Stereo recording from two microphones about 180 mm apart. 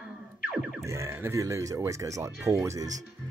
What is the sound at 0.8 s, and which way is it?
Speech, 15° right (ahead or behind).